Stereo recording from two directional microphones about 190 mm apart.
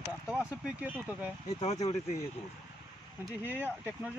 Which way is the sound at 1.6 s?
35° left (ahead or behind).